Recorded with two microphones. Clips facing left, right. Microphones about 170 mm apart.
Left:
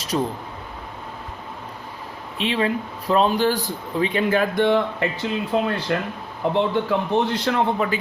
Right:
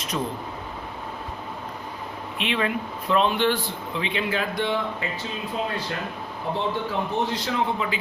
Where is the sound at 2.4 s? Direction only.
30° left (ahead or behind); by 5.0 s 55° left (ahead or behind).